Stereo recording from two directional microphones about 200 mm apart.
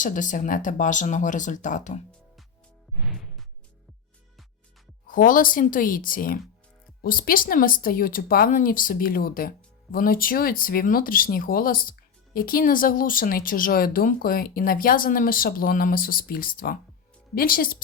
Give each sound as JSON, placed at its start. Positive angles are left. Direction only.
{"t": 0.0, "sound": "speech", "side_deg": 40}
{"t": 3.0, "sound": "music", "side_deg": 0}
{"t": 5.0, "sound": "speech", "side_deg": 45}